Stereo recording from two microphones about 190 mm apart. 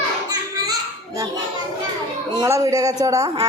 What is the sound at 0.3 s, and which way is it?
Children playing, 20° right (ahead or behind).